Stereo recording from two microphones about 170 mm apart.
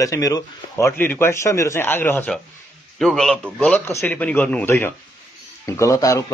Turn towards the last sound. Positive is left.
turn(degrees=20)  # may be behind; listen again after turning